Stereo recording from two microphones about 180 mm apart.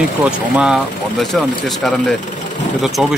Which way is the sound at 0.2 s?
5° right (ahead or behind).